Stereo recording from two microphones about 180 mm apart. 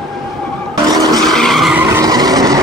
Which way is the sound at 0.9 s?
20° right (ahead or behind).